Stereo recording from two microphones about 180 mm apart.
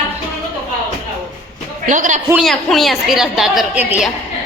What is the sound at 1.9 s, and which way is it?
Speech, 45° right (ahead or behind).